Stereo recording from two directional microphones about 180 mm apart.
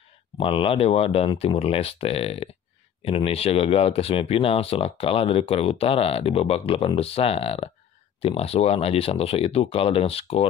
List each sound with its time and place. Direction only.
0.4 s speech: 30° left (ahead or behind)